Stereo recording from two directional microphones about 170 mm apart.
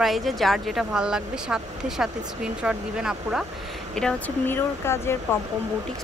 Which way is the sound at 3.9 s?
10° left (ahead or behind).